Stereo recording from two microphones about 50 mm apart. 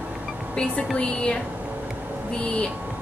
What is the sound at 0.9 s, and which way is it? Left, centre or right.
Speech, left.